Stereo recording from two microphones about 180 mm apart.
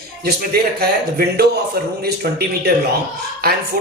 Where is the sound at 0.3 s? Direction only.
60° right (ahead or behind).